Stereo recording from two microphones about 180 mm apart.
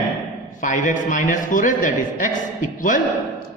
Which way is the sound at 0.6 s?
45° left (ahead or behind).